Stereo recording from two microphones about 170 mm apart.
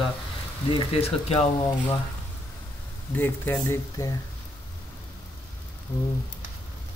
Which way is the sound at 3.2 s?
10° left (ahead or behind).